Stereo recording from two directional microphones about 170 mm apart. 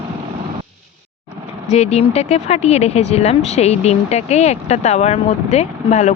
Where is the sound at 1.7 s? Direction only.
40° left (ahead or behind).